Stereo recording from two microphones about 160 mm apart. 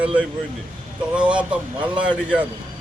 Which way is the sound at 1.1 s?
5° right (ahead or behind).